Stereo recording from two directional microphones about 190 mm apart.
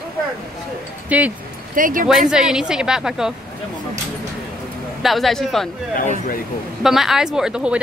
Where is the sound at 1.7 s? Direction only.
45° right (ahead or behind).